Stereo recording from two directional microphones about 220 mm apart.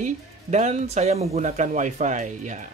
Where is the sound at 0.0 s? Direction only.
30° right (ahead or behind).